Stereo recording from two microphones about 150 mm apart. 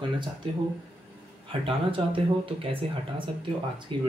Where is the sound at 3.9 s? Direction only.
35° right (ahead or behind).